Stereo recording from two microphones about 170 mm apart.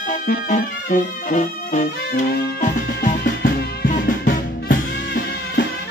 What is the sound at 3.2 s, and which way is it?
Music, 70° left (ahead or behind).